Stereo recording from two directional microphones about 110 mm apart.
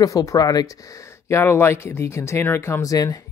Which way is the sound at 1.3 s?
25° left (ahead or behind).